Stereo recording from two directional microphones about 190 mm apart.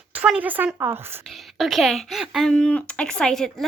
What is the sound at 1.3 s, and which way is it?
A woman's voice, centre (ahead or behind).